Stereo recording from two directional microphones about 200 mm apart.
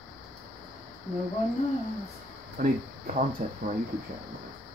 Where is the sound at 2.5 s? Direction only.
40° right (ahead or behind).